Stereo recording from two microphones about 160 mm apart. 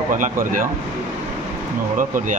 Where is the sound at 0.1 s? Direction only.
55° right (ahead or behind).